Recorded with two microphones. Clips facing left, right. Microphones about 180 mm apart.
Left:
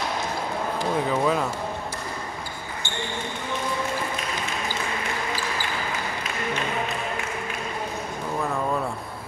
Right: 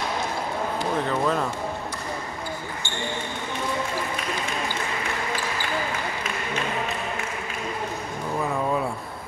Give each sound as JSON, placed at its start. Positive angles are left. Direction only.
{"t": 1.0, "sound": "speech", "side_deg": 5}